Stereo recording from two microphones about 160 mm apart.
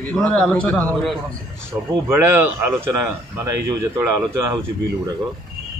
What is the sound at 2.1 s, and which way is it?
Speech, 15° right (ahead or behind).